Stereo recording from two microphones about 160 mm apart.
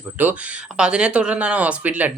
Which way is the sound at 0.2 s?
10° right (ahead or behind).